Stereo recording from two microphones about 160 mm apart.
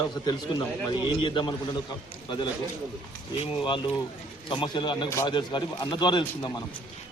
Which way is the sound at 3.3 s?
30° left (ahead or behind).